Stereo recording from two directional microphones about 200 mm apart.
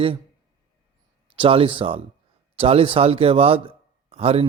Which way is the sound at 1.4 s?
25° right (ahead or behind).